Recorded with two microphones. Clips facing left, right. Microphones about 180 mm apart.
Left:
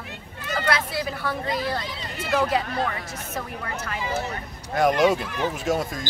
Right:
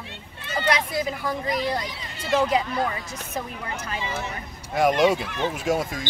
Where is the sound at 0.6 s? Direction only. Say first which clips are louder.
Right 2 dB; 20° right (ahead or behind).